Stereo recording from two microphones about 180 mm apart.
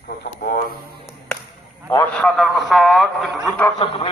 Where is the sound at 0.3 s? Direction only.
50° left (ahead or behind).